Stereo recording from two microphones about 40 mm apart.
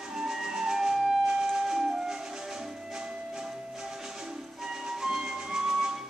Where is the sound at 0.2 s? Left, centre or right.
Centre.